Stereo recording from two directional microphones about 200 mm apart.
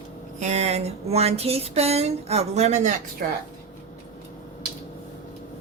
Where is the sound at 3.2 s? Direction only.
45° right (ahead or behind).